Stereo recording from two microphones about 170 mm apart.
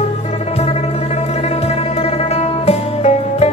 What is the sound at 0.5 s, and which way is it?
Music, 40° left (ahead or behind).